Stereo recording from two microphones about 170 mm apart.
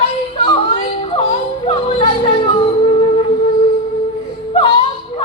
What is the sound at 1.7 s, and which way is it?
Music, 30° left (ahead or behind).